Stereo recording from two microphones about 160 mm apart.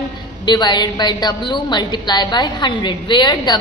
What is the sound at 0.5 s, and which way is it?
A woman's voice, 25° left (ahead or behind).